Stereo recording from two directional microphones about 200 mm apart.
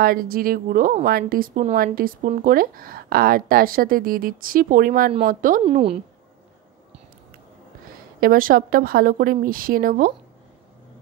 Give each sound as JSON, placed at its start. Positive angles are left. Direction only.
{"t": 0.0, "sound": "speech", "side_deg": -45}
{"t": 5.6, "sound": "a woman's voice", "side_deg": -30}
{"t": 8.2, "sound": "speech", "side_deg": -45}